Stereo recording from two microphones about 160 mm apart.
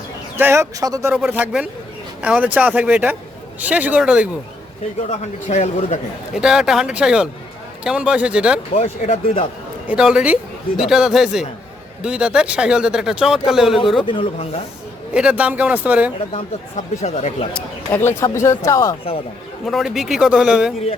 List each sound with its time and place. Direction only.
0.3 s speech: 15° right (ahead or behind)
1.1 s speech: 10° right (ahead or behind)
5.0 s speech: 45° left (ahead or behind)
6.3 s speech: 5° right (ahead or behind)
8.7 s speech: 40° left (ahead or behind)
9.8 s speech: 5° right (ahead or behind)
14.0 s speech: 30° left (ahead or behind)
15.1 s speech: 5° right (ahead or behind)
16.3 s speech: 45° left (ahead or behind)
17.5 s speech: 10° left (ahead or behind)
19.6 s speech: centre (ahead or behind)